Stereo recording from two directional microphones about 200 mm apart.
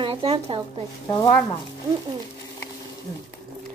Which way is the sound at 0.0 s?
25° right (ahead or behind).